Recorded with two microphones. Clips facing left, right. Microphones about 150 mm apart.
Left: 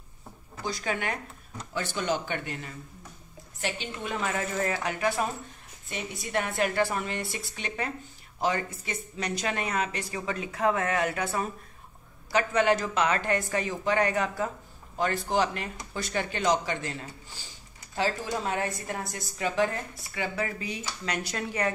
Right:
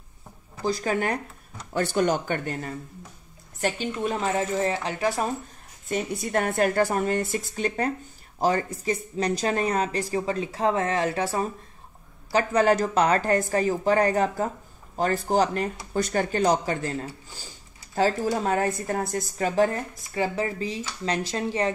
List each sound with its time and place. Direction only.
0.6 s a woman's voice: 35° right (ahead or behind)
1.7 s a woman's voice: 50° right (ahead or behind); by 5.3 s 35° right (ahead or behind)
5.9 s a woman's voice: 45° right (ahead or behind); by 21.7 s 30° right (ahead or behind)